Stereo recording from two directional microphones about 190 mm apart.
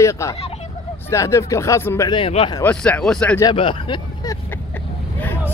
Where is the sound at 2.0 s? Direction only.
30° left (ahead or behind).